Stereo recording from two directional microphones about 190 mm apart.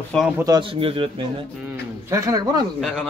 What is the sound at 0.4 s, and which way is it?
Speech, 20° right (ahead or behind).